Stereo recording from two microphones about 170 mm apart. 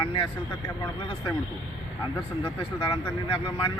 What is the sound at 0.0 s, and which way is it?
Speech, 30° left (ahead or behind).